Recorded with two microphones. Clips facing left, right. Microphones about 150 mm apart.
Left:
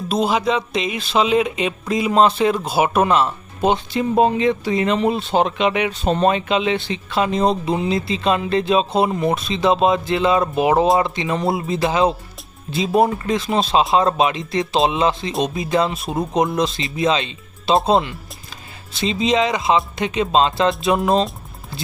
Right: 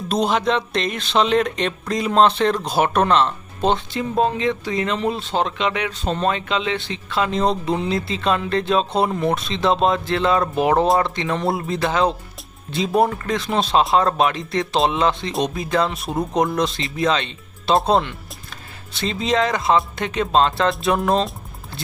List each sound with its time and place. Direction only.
0.1 s speech: 5° left (ahead or behind)
19.2 s speech: 20° left (ahead or behind)
19.5 s speech: centre (ahead or behind)